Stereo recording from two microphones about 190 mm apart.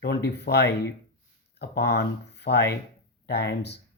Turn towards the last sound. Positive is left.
turn(degrees=65)  # may be behind; listen again after turning